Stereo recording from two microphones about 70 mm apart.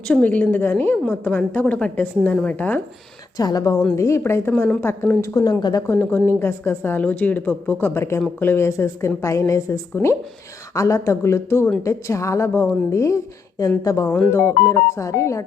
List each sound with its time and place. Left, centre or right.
0.1 s a woman's voice: left
3.3 s a woman's voice: left
3.9 s a woman's voice: left
4.2 s speech: left
5.2 s a woman's voice: left
6.0 s a woman's voice: left
14.3 s a woman's voice: left